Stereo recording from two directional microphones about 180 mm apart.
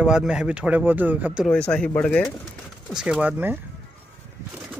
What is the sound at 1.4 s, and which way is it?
Speech, 5° left (ahead or behind).